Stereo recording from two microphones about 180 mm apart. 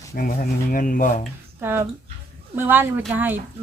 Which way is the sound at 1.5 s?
10° right (ahead or behind).